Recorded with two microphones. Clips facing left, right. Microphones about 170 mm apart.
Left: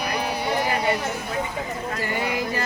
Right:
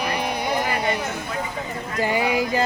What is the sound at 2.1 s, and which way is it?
Speech, 90° right.